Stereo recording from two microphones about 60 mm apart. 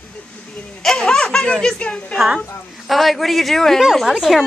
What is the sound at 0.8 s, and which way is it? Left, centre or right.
Speech, centre.